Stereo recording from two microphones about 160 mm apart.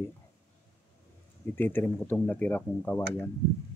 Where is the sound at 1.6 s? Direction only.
10° left (ahead or behind).